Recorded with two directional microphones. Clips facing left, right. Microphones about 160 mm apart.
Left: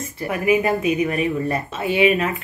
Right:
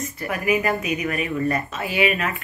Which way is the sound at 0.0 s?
25° left (ahead or behind).